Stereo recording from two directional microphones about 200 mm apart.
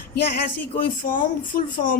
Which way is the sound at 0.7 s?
45° left (ahead or behind).